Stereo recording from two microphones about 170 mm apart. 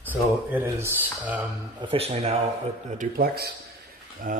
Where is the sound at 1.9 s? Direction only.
35° right (ahead or behind).